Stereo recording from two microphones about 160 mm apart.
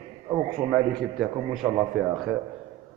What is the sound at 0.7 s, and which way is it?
A man's voice, 5° right (ahead or behind).